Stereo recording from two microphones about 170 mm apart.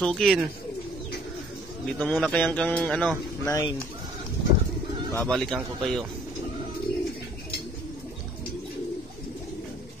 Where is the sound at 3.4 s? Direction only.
20° left (ahead or behind).